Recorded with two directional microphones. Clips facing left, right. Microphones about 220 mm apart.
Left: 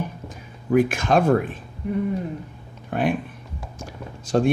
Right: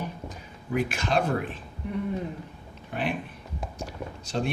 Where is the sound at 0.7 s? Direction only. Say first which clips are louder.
Left 8 dB; 50° left (ahead or behind).